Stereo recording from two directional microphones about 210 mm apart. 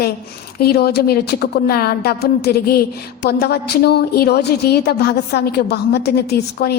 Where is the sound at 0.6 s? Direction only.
50° left (ahead or behind).